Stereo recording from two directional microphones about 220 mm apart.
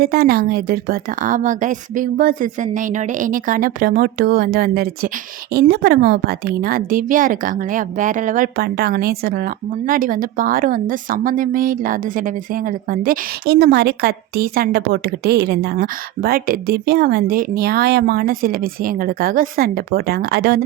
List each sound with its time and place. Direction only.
0.0 s speech: 45° right (ahead or behind)